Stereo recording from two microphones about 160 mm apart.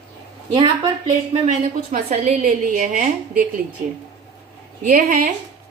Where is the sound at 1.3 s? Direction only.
45° right (ahead or behind).